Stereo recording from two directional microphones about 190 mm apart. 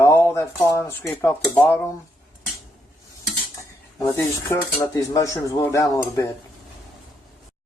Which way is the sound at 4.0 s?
15° left (ahead or behind).